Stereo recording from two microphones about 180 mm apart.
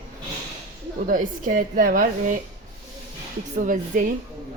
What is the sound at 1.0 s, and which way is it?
A woman's voice, 50° right (ahead or behind).